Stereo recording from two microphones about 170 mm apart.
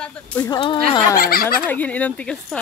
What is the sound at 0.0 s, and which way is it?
Speech, 5° left (ahead or behind).